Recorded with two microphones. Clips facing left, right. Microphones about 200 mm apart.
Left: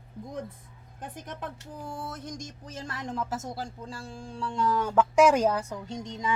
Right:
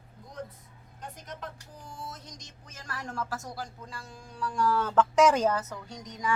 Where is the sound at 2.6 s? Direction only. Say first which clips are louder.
Left 3 dB; 25° left (ahead or behind).